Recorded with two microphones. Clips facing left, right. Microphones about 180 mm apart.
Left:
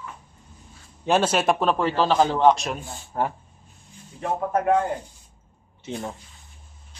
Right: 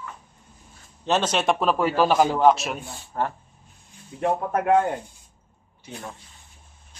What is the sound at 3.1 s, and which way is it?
Speech, 10° left (ahead or behind).